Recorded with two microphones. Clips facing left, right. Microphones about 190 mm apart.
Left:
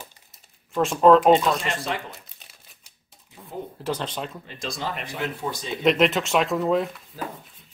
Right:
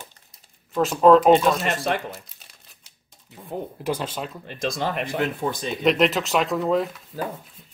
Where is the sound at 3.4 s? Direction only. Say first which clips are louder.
Right 5 dB; 25° right (ahead or behind).